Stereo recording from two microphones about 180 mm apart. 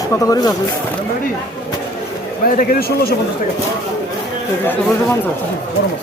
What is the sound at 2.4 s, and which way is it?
Speech, 55° left (ahead or behind).